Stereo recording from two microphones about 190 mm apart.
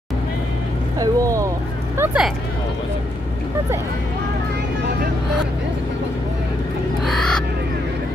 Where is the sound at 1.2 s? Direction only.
15° right (ahead or behind).